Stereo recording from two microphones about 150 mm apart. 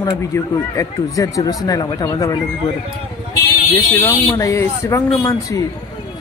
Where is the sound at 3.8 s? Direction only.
20° left (ahead or behind).